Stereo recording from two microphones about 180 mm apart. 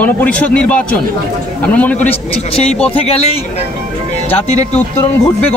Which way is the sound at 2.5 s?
35° left (ahead or behind).